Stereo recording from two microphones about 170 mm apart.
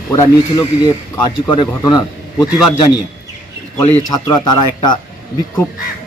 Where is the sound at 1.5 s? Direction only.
25° left (ahead or behind).